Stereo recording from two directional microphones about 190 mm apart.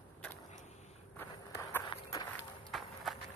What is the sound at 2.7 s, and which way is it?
Run, centre (ahead or behind).